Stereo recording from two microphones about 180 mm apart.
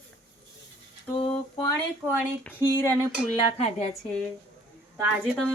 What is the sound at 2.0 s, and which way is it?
Speech, 10° left (ahead or behind).